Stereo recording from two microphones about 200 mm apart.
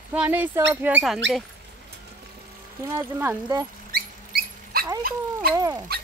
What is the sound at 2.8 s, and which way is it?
Speech, 10° right (ahead or behind).